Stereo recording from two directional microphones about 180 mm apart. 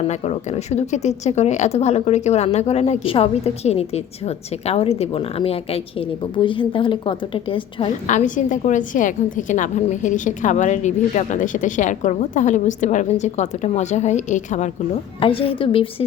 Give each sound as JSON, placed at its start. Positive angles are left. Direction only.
{"t": 0.1, "sound": "speech", "side_deg": 35}
{"t": 8.0, "sound": "a woman's voice", "side_deg": 45}
{"t": 15.2, "sound": "speech", "side_deg": 30}